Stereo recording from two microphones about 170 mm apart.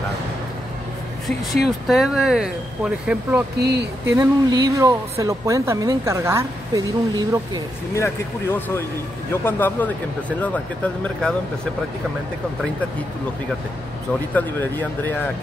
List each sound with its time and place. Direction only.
1.2 s speech: centre (ahead or behind)
3.5 s speech: 80° right
4.2 s speech: 20° right (ahead or behind)
7.9 s speech: 15° left (ahead or behind)
14.3 s speech: 10° left (ahead or behind)